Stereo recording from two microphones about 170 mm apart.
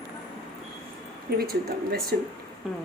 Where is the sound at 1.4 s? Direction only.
65° right (ahead or behind).